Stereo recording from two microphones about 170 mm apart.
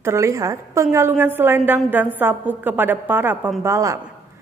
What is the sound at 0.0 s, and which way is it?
A woman's voice, 15° right (ahead or behind).